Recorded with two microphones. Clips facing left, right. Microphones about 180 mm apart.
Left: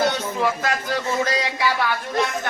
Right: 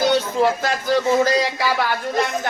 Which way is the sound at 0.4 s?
35° right (ahead or behind).